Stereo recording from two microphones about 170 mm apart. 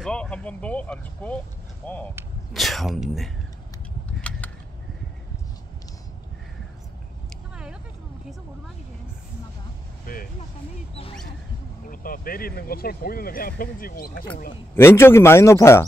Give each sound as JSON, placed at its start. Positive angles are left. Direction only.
{"t": 0.0, "sound": "speech", "side_deg": 5}
{"t": 4.2, "sound": "a sound", "side_deg": 10}
{"t": 10.1, "sound": "speech", "side_deg": 60}
{"t": 11.9, "sound": "speech", "side_deg": 55}
{"t": 14.8, "sound": "speech", "side_deg": 15}